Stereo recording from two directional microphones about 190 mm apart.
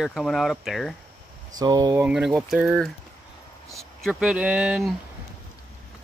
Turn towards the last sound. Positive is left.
turn(degrees=-5)  # may be behind; listen again after turning